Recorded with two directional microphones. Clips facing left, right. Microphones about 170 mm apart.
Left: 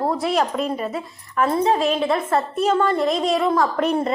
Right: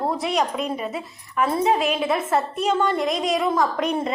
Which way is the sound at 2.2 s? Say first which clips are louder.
Left 1 dB; 20° right (ahead or behind).